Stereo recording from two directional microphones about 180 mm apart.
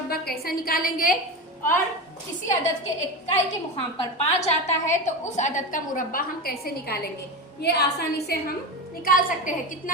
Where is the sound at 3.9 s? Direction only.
40° left (ahead or behind); by 8.5 s 60° left (ahead or behind).